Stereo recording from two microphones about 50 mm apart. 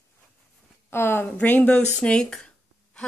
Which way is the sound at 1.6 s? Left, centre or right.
Left.